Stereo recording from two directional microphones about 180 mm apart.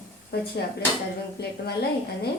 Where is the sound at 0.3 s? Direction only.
60° left (ahead or behind).